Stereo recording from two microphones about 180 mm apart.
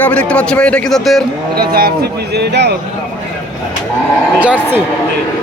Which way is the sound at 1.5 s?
55° right (ahead or behind).